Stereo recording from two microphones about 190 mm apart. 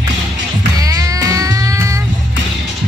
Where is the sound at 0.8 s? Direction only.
15° right (ahead or behind).